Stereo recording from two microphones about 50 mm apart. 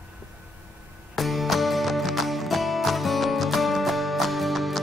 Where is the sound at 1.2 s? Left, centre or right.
Centre.